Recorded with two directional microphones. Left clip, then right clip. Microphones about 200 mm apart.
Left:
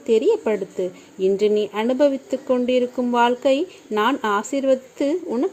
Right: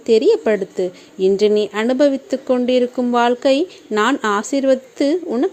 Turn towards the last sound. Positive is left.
turn(degrees=-10)  # may be behind; listen again after turning